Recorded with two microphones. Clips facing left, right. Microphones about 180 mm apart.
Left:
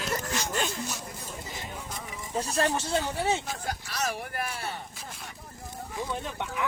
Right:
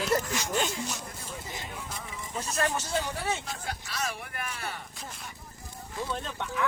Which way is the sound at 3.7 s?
40° left (ahead or behind).